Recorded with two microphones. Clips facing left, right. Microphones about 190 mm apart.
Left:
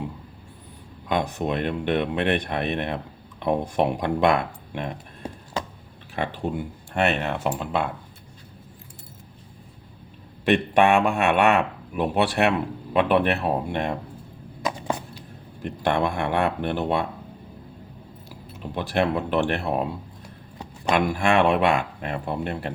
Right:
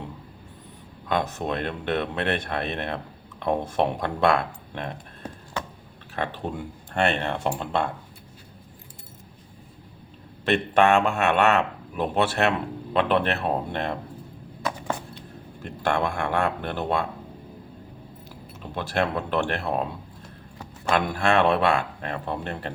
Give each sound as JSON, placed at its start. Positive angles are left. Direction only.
{"t": 1.0, "sound": "speech", "side_deg": 15}
{"t": 10.4, "sound": "speech", "side_deg": 15}
{"t": 14.6, "sound": "a sound", "side_deg": 15}
{"t": 15.6, "sound": "speech", "side_deg": 15}
{"t": 18.7, "sound": "speech", "side_deg": 15}